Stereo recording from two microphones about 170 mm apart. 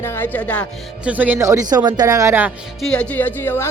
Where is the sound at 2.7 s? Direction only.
5° left (ahead or behind).